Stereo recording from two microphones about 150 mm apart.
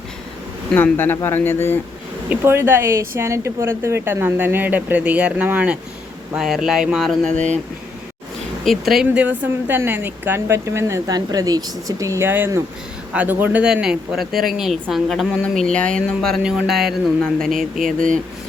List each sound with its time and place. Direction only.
0.7 s speech: 15° left (ahead or behind)
2.3 s a woman's voice: 15° right (ahead or behind); by 7.4 s 5° left (ahead or behind)
8.6 s a woman's voice: centre (ahead or behind)